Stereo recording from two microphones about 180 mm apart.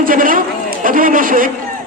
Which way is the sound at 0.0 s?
50° right (ahead or behind).